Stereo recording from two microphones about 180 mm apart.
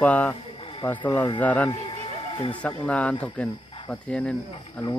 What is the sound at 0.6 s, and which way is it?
Snake, 30° left (ahead or behind).